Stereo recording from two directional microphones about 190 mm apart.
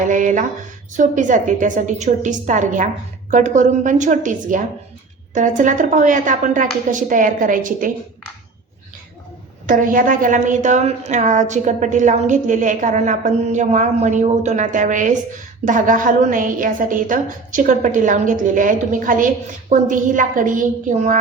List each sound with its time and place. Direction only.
0.0 s a woman's voice: 40° right (ahead or behind)
9.6 s a woman's voice: 45° right (ahead or behind)